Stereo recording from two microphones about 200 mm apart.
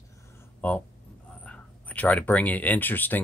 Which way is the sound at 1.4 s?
5° left (ahead or behind).